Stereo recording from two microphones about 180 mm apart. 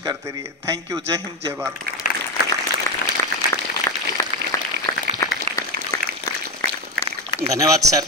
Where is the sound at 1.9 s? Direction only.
60° right (ahead or behind).